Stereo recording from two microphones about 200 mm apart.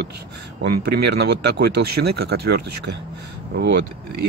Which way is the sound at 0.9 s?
55° right (ahead or behind).